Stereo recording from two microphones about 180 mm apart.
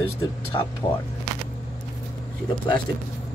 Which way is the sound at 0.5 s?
20° left (ahead or behind).